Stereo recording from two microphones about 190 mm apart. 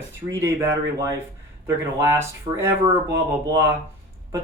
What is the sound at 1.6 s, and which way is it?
Speech, 15° right (ahead or behind).